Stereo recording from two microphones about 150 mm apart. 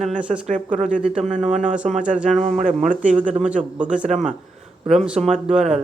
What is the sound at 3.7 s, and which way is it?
Speech, 10° right (ahead or behind).